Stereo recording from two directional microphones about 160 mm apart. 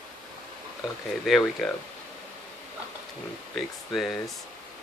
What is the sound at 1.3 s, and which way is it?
Speech, centre (ahead or behind).